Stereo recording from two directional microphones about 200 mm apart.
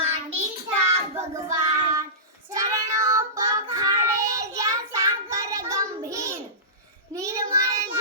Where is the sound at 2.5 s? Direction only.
15° right (ahead or behind).